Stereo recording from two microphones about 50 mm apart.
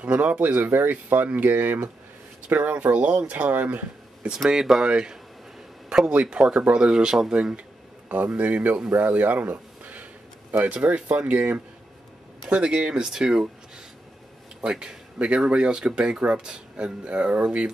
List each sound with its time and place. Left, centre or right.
0.0 s speech: right
4.5 s speech: centre
6.3 s speech: right
8.1 s speech: right
9.1 s a sound: right
10.6 s speech: right
12.4 s speech: centre
14.6 s speech: centre